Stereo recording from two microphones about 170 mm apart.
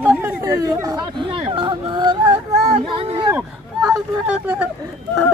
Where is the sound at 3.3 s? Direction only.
20° right (ahead or behind).